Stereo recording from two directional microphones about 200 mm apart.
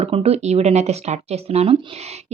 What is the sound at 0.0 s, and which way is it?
Speech, 30° right (ahead or behind).